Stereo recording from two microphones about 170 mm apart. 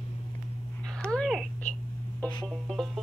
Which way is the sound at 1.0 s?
5° left (ahead or behind).